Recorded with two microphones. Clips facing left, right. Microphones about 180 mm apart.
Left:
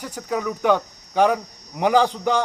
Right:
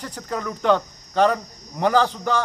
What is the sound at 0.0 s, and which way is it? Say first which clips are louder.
Speech: left 3 dB; 10° left (ahead or behind).